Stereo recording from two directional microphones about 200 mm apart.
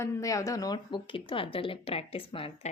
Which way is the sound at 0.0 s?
15° left (ahead or behind).